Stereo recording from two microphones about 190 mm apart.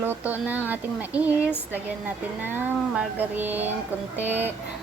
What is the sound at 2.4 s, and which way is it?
Speech, 10° right (ahead or behind).